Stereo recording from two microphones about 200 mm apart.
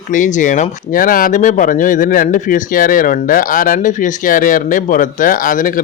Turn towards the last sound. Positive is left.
turn(degrees=40)  # may be behind; listen again after turning